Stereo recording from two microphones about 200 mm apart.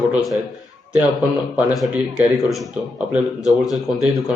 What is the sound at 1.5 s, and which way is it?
Speech, 5° right (ahead or behind).